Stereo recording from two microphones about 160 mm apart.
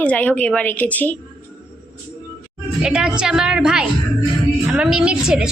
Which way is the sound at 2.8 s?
5° right (ahead or behind).